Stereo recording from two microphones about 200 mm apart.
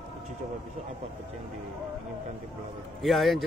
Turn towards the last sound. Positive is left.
turn(degrees=0)  # may be behind; listen again after turning